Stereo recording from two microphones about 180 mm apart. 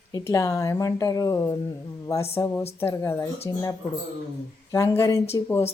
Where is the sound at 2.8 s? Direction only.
15° left (ahead or behind).